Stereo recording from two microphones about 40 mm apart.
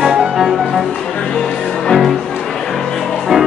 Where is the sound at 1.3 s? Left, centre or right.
Centre.